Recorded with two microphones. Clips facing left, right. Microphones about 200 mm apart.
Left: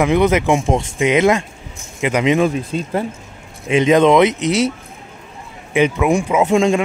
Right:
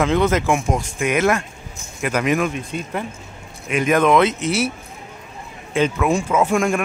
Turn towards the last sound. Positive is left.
turn(degrees=20)  # may be behind; listen again after turning